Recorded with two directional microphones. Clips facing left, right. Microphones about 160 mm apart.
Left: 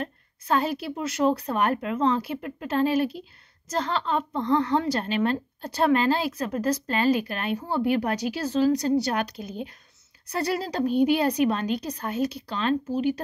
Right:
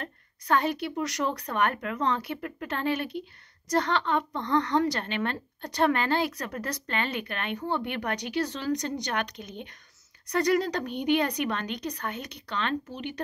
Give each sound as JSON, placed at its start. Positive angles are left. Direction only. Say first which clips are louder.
{"t": 0.0, "sound": "a woman's voice", "louder": "left 6 dB", "side_deg": 30}
{"t": 4.2, "sound": "speech", "louder": "left 4 dB", "side_deg": 5}
{"t": 4.6, "sound": "a woman's voice", "louder": "left 2 dB", "side_deg": 30}